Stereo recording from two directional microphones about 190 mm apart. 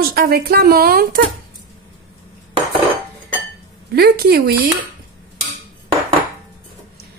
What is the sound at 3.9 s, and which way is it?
Speech, 55° right (ahead or behind).